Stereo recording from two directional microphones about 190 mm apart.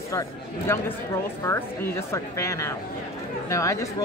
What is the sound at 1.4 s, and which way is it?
Speech, 10° left (ahead or behind).